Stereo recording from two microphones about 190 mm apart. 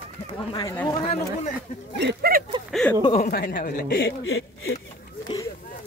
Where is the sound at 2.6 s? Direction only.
Centre (ahead or behind).